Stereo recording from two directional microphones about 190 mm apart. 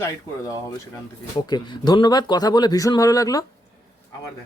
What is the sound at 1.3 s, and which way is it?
Speech, 25° left (ahead or behind).